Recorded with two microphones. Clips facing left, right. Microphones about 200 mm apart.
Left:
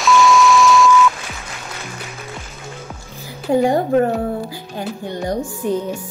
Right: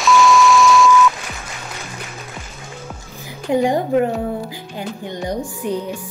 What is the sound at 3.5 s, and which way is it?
Speech, 30° left (ahead or behind).